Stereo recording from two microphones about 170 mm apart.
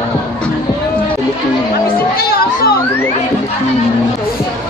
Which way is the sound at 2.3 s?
65° left (ahead or behind).